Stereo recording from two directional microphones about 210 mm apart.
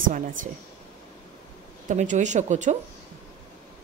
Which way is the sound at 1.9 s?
35° right (ahead or behind).